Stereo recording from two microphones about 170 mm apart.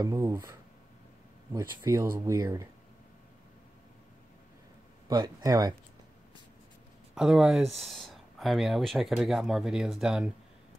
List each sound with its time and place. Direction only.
0.0 s speech: 15° right (ahead or behind)
5.0 s speech: 20° right (ahead or behind)
7.2 s speech: 5° right (ahead or behind)